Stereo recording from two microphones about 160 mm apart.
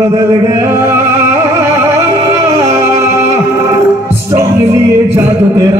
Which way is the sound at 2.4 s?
15° right (ahead or behind).